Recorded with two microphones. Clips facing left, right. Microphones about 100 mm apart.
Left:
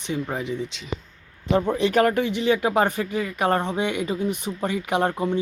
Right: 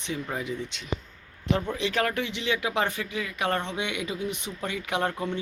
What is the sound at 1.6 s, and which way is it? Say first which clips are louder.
Speech: left 8 dB; 40° left (ahead or behind).